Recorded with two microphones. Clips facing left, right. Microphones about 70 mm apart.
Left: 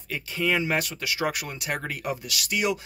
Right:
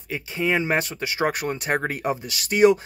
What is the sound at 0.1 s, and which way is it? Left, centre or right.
Speech, right.